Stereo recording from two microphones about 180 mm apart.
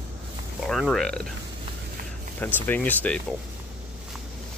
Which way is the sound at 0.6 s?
Centre (ahead or behind).